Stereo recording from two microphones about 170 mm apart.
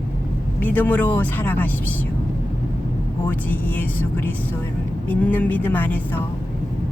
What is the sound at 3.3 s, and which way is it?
Speech, 10° left (ahead or behind).